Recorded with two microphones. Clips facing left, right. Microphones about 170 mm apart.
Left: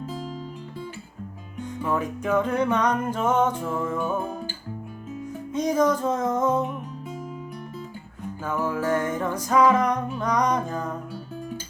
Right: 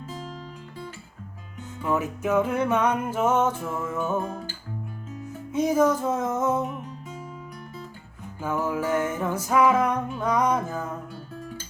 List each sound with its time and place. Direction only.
1.8 s music: 10° right (ahead or behind)
3.9 s music: 10° left (ahead or behind)
5.5 s music: 10° right (ahead or behind)
8.4 s music: 10° right (ahead or behind)